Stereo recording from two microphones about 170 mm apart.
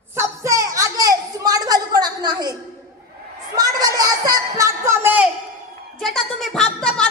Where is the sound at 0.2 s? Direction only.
20° right (ahead or behind).